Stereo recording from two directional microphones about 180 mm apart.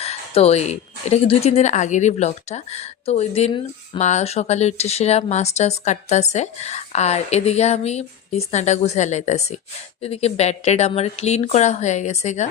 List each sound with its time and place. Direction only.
0.0 s a woman's voice: 35° left (ahead or behind)